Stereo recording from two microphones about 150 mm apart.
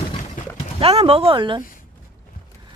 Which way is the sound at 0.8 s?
40° right (ahead or behind).